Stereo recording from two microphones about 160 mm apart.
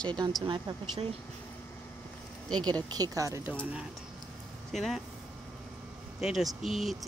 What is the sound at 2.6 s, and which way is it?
Speech, 25° right (ahead or behind).